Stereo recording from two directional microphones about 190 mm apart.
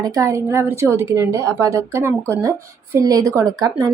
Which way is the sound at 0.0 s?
15° right (ahead or behind).